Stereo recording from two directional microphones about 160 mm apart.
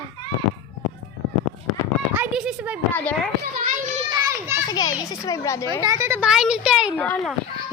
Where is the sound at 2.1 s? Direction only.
5° right (ahead or behind).